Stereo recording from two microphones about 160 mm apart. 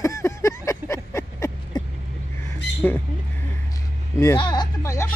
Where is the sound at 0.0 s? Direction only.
20° left (ahead or behind).